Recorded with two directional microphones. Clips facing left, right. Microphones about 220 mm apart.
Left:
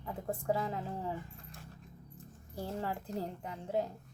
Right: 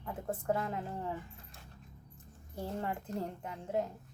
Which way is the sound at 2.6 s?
Centre (ahead or behind).